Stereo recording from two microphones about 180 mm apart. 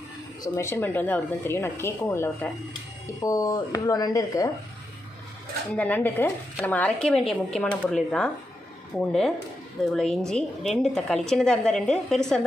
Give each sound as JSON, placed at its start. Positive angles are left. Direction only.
{"t": 0.4, "sound": "speech", "side_deg": 15}
{"t": 5.8, "sound": "a woman's voice", "side_deg": 10}
{"t": 9.9, "sound": "a woman's voice", "side_deg": 5}